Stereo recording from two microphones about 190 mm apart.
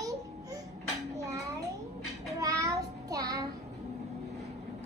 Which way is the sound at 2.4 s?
15° right (ahead or behind).